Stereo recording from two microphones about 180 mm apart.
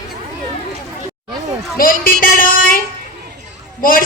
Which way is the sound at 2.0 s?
50° left (ahead or behind).